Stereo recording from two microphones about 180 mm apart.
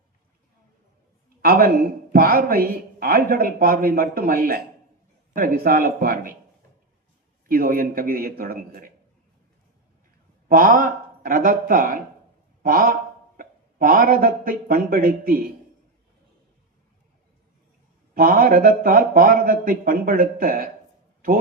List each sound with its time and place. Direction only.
1.4 s a woman's voice: 55° right (ahead or behind)
7.4 s speech: 50° right (ahead or behind)
10.5 s a man's voice: 50° right (ahead or behind)
18.1 s speech: 50° right (ahead or behind)